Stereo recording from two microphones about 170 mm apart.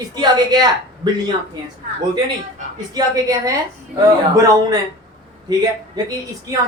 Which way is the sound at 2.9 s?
20° right (ahead or behind).